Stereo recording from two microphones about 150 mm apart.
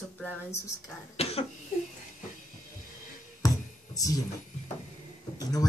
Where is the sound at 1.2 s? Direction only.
40° left (ahead or behind).